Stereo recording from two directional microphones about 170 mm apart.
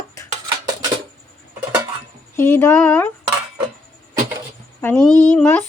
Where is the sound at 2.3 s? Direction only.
15° left (ahead or behind).